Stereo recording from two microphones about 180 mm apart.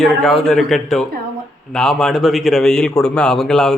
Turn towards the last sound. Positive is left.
turn(degrees=5)  # may be behind; listen again after turning